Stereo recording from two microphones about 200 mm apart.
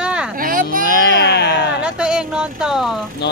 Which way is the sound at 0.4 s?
45° right (ahead or behind).